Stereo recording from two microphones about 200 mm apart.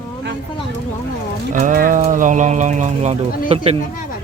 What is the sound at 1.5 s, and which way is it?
Speech, 40° right (ahead or behind).